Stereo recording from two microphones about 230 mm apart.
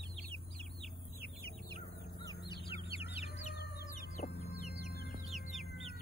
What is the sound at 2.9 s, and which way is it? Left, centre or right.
Bird, left.